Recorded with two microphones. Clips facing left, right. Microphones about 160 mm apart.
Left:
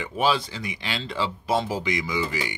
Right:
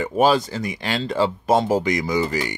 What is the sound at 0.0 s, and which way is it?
Speech, 45° right (ahead or behind).